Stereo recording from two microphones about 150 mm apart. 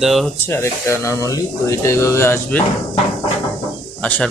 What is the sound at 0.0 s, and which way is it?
Speech, centre (ahead or behind).